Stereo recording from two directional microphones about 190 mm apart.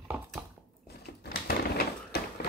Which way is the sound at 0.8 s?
60° left (ahead or behind).